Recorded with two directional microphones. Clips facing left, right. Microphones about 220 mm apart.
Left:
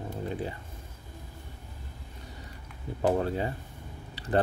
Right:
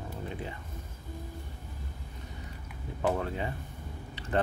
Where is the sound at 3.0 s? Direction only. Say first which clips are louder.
Left 4 dB; 35° left (ahead or behind).